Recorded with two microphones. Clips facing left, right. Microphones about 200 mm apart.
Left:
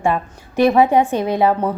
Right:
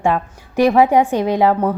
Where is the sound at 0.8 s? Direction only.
10° right (ahead or behind).